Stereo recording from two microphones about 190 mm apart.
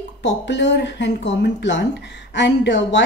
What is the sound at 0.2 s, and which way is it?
A woman's voice, 65° left (ahead or behind).